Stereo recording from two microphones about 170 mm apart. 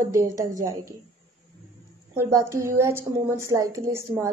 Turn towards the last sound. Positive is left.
turn(degrees=-15)  # may be behind; listen again after turning